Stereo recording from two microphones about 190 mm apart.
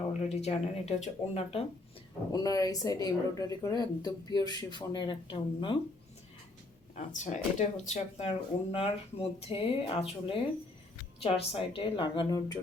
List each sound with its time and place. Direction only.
0.1 s speech: 35° left (ahead or behind)
2.3 s speech: 20° left (ahead or behind)
6.9 s speech: 40° left (ahead or behind); by 12.5 s 20° left (ahead or behind)